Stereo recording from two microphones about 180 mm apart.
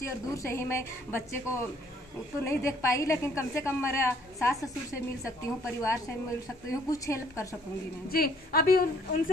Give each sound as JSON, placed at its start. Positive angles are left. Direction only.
{"t": 0.3, "sound": "a woman's voice", "side_deg": 15}
{"t": 8.1, "sound": "a woman's voice", "side_deg": 55}